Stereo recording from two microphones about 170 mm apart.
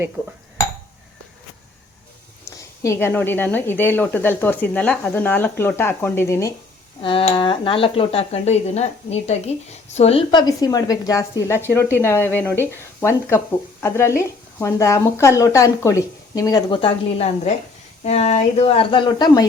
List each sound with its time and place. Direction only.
2.4 s speech: 15° left (ahead or behind)
7.0 s speech: 30° left (ahead or behind)